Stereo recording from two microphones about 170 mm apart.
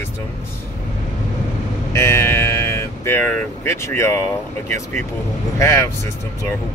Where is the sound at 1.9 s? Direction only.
15° left (ahead or behind).